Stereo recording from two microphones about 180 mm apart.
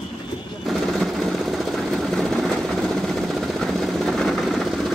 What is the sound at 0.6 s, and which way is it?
Jackhammer, centre (ahead or behind).